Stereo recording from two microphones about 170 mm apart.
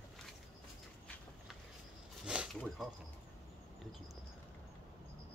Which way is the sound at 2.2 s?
5° right (ahead or behind).